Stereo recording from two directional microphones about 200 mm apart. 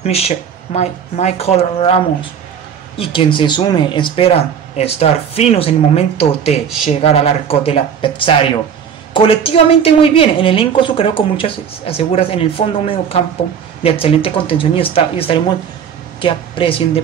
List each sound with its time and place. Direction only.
0.0 s a woman's voice: 30° left (ahead or behind)